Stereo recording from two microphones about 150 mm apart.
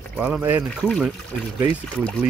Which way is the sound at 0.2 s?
10° right (ahead or behind).